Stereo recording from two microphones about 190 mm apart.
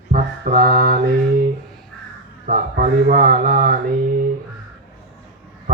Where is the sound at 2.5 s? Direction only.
45° right (ahead or behind).